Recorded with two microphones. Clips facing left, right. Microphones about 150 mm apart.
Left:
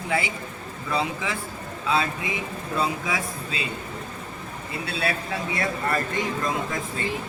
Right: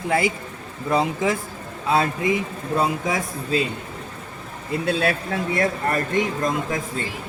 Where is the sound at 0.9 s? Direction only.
45° right (ahead or behind).